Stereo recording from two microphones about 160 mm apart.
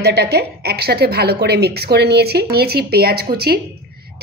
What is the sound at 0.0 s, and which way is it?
A woman's voice, 90° right.